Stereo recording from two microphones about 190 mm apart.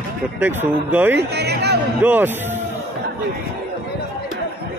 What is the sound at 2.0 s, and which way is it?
Speech, 10° right (ahead or behind).